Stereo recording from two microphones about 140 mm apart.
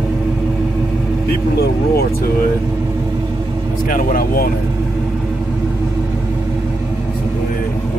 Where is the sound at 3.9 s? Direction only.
90° left.